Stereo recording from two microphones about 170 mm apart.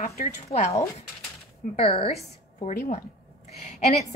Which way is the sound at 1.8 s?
35° left (ahead or behind).